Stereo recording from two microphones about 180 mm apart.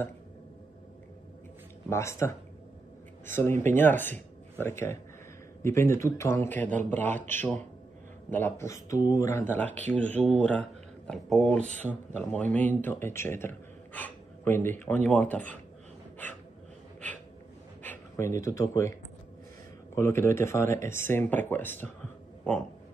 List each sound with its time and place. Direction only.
1.9 s speech: 15° left (ahead or behind)
17.8 s speech: 15° left (ahead or behind)
20.0 s speech: 15° left (ahead or behind)